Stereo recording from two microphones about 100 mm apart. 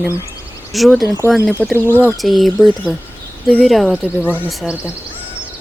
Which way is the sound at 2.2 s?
Centre (ahead or behind).